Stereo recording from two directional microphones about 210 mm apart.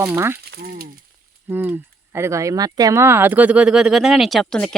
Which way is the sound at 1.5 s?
10° right (ahead or behind).